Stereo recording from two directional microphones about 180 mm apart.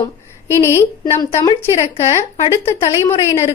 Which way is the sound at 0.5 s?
15° left (ahead or behind).